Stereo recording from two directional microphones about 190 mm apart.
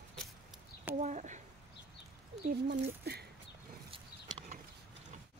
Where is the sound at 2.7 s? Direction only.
55° right (ahead or behind).